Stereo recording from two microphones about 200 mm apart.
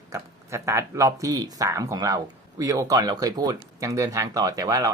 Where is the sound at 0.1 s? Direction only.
15° right (ahead or behind).